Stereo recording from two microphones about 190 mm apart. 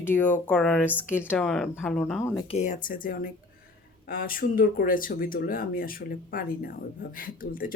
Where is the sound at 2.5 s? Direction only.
40° left (ahead or behind).